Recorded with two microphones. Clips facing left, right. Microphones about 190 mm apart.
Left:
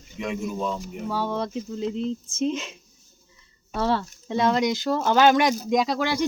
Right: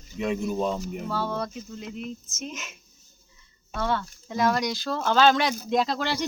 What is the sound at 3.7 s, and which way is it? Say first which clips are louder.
Speech: left 4 dB; 30° left (ahead or behind).